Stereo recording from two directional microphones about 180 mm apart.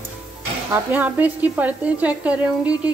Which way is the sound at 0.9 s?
10° right (ahead or behind).